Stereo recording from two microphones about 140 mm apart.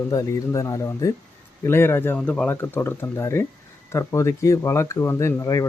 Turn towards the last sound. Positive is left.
turn(degrees=20)  # may be behind; listen again after turning